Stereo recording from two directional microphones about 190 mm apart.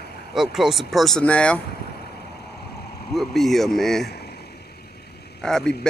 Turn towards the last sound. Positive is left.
turn(degrees=5)  # may be behind; listen again after turning